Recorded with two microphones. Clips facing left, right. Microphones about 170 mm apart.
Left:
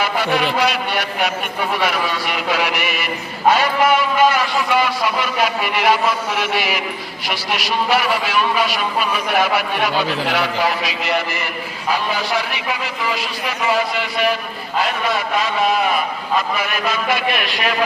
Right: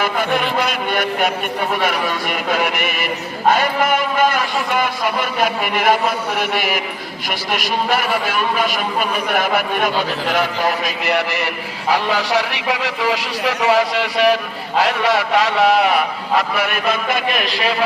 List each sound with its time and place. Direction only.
0.0 s a man's voice: 50° right (ahead or behind)
10.8 s a man's voice: 60° right (ahead or behind); by 17.6 s 40° right (ahead or behind)